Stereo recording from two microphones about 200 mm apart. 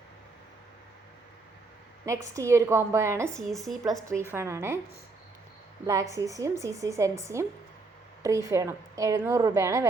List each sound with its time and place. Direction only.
2.2 s a woman's voice: 15° right (ahead or behind)
3.4 s speech: centre (ahead or behind)
4.3 s a woman's voice: 15° right (ahead or behind)
5.8 s a woman's voice: 15° right (ahead or behind)